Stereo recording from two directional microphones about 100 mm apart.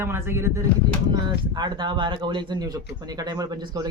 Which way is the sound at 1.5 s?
50° right (ahead or behind).